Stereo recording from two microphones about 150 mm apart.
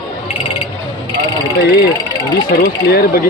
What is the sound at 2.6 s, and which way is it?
Speech, 90° left.